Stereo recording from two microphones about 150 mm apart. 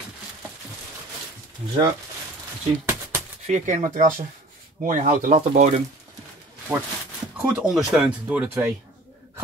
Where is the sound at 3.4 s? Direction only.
50° right (ahead or behind).